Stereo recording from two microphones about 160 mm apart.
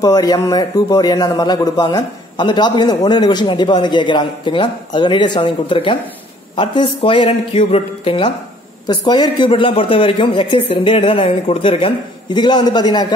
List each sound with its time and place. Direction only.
0.0 s a man's voice: 25° left (ahead or behind)